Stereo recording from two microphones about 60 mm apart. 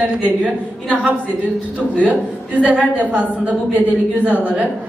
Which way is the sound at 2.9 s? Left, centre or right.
Right.